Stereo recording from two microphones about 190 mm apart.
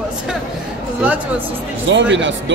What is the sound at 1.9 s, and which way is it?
Speech, 70° right (ahead or behind).